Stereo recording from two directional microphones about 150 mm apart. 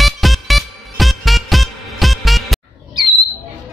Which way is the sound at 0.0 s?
Centre (ahead or behind).